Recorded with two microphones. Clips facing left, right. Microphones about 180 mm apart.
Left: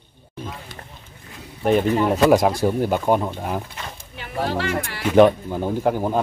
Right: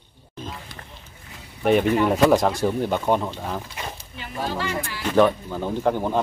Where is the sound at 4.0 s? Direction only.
65° left (ahead or behind).